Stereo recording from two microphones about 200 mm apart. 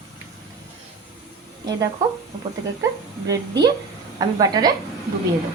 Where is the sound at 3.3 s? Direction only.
20° right (ahead or behind).